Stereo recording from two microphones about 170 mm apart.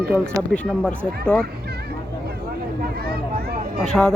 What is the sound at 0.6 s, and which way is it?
Speech, 5° left (ahead or behind).